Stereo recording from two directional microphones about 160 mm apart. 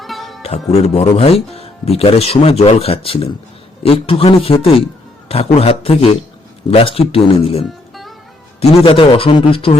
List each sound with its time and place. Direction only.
0.0 s music: centre (ahead or behind)
0.4 s speech: 40° left (ahead or behind)
8.6 s speech: 35° left (ahead or behind)